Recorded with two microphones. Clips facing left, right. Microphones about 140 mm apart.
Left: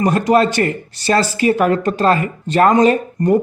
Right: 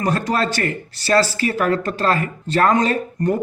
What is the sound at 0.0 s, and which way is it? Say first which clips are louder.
A man's voice: left 7 dB; 15° left (ahead or behind).